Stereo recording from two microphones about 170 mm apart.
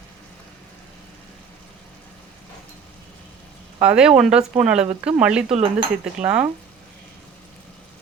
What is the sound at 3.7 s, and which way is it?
Speech, 5° right (ahead or behind).